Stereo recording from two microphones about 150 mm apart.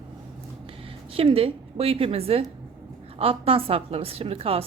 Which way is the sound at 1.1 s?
40° right (ahead or behind).